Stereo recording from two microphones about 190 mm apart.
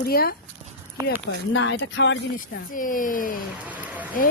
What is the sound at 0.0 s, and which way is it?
Speech, 55° left (ahead or behind).